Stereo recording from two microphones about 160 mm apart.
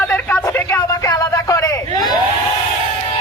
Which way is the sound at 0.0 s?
10° left (ahead or behind).